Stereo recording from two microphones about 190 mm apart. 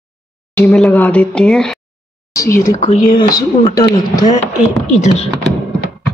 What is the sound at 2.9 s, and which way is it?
Speech, 20° left (ahead or behind).